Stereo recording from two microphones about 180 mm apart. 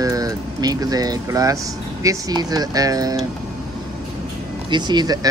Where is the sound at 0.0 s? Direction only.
20° right (ahead or behind).